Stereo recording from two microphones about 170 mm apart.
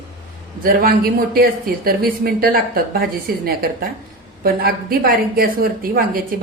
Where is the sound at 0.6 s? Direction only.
60° right (ahead or behind).